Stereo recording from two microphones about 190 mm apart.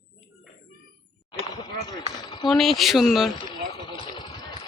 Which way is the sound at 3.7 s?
25° left (ahead or behind).